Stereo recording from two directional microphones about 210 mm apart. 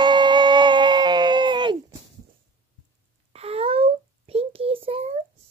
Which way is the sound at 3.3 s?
30° right (ahead or behind).